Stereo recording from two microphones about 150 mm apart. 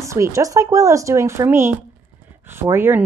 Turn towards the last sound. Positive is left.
turn(degrees=-15)  # may be behind; listen again after turning